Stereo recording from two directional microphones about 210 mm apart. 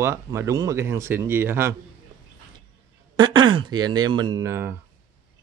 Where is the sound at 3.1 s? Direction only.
20° right (ahead or behind).